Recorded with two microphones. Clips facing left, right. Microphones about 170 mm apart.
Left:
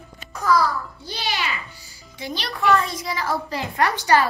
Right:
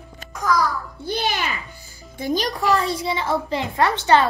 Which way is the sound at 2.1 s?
45° right (ahead or behind).